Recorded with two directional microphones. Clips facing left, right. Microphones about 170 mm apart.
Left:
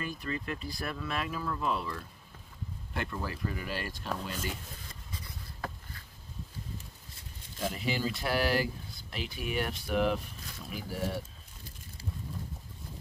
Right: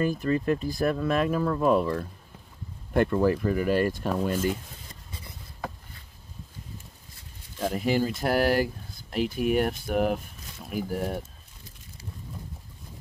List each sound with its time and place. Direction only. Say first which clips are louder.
0.0 s speech: right 12 dB; 45° right (ahead or behind)
7.6 s speech: right 7 dB; 50° right (ahead or behind)